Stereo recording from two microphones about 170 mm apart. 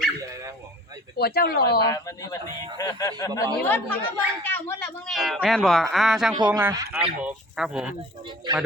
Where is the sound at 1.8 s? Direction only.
20° left (ahead or behind).